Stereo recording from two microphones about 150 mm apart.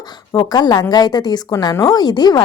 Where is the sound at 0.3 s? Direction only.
25° left (ahead or behind).